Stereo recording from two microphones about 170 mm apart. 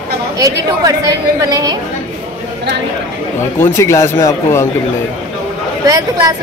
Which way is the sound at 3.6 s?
15° left (ahead or behind).